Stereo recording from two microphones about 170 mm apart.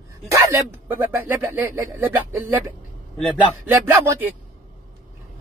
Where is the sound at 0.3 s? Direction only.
15° right (ahead or behind).